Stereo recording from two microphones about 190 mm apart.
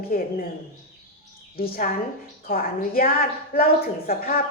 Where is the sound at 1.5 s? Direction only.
55° left (ahead or behind).